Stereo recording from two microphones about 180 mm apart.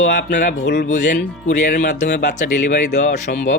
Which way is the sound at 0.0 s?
70° left (ahead or behind).